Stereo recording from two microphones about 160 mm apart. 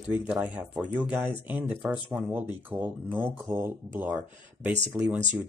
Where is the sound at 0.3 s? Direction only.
10° right (ahead or behind).